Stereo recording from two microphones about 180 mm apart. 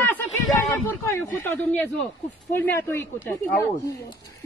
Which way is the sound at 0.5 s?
15° left (ahead or behind).